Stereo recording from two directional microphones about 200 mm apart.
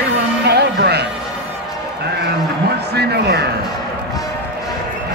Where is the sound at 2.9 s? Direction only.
55° right (ahead or behind).